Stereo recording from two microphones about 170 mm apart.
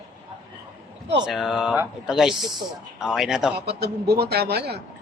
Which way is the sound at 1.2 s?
Centre (ahead or behind).